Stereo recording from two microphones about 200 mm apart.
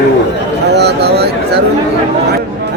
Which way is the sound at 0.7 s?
55° right (ahead or behind).